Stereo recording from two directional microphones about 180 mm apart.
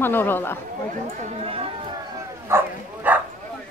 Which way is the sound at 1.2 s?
30° right (ahead or behind).